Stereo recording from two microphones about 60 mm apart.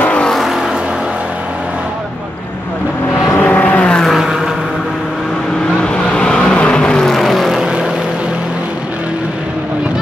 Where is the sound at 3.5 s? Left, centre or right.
Centre.